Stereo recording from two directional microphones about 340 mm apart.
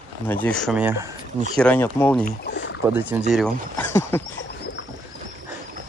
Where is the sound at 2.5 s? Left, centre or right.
Left.